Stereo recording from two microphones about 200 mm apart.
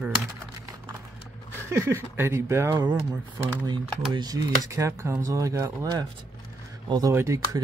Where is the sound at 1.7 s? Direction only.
10° right (ahead or behind).